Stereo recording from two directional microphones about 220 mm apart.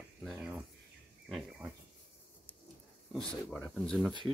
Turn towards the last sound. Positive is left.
turn(degrees=5)  # may be behind; listen again after turning